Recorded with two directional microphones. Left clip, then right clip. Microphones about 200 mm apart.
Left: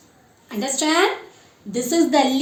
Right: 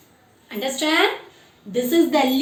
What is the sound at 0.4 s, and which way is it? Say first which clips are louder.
Speech: left 1 dB; 60° left (ahead or behind).